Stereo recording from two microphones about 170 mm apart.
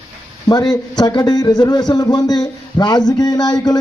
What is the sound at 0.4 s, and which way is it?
Speech, 25° left (ahead or behind).